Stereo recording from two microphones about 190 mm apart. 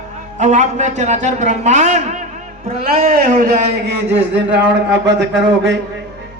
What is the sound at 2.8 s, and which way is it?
Speech, 50° right (ahead or behind).